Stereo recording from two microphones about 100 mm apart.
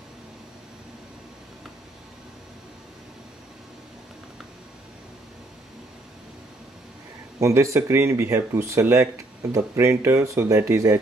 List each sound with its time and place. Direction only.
7.3 s speech: 30° right (ahead or behind)